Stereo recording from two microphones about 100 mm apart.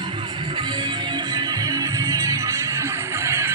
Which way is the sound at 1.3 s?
35° right (ahead or behind).